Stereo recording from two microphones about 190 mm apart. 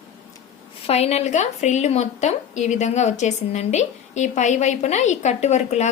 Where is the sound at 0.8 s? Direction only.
35° left (ahead or behind).